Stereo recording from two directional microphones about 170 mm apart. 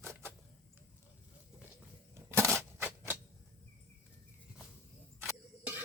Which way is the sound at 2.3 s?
15° right (ahead or behind).